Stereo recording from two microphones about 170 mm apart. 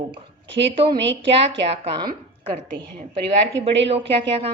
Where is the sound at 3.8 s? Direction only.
35° right (ahead or behind).